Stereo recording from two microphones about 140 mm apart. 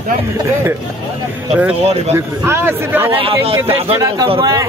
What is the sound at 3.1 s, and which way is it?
Speech, 40° right (ahead or behind).